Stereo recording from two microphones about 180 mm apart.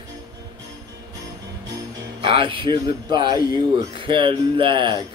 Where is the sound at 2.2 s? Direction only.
30° right (ahead or behind).